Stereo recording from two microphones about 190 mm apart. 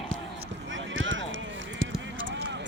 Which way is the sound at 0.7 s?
80° right.